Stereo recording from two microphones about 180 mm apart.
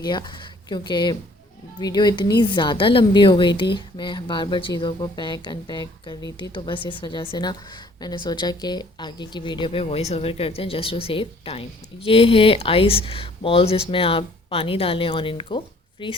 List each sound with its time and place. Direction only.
0.0 s speech: 25° left (ahead or behind)